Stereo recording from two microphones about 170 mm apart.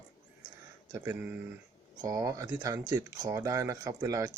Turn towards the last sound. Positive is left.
turn(degrees=-20)  # may be behind; listen again after turning